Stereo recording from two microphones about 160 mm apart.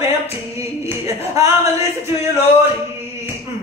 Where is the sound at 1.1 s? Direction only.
20° right (ahead or behind).